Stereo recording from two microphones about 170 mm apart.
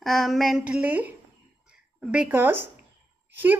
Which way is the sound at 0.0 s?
Centre (ahead or behind).